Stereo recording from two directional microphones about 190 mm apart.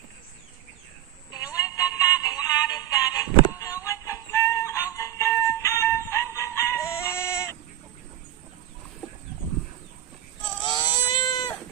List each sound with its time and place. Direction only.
1.3 s synthetic singing: 20° left (ahead or behind)
10.8 s cat: 20° left (ahead or behind)